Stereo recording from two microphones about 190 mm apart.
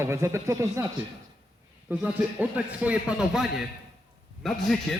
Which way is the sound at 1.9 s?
10° right (ahead or behind).